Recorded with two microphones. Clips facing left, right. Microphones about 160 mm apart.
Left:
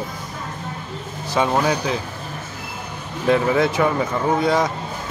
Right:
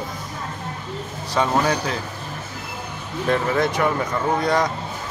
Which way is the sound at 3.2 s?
10° left (ahead or behind).